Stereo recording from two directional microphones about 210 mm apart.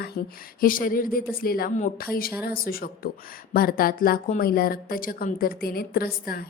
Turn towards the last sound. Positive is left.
turn(degrees=45)  # may be behind; listen again after turning